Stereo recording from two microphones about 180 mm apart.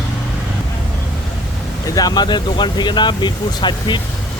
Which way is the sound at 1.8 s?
20° left (ahead or behind).